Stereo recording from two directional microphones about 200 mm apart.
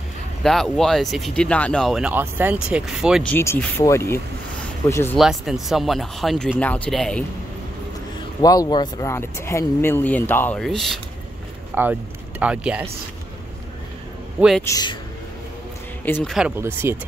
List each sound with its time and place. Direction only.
0.4 s speech: centre (ahead or behind)
3.3 s speech: 10° left (ahead or behind)
5.1 s speech: centre (ahead or behind)
8.4 s speech: 20° left (ahead or behind); by 11.0 s centre (ahead or behind)
11.7 s speech: 10° right (ahead or behind)
14.6 s speech: 20° left (ahead or behind)
16.1 s speech: 10° left (ahead or behind)
16.3 s speech: 10° right (ahead or behind)